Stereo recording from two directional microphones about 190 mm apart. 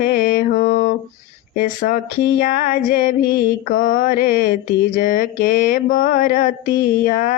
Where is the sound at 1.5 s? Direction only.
45° left (ahead or behind).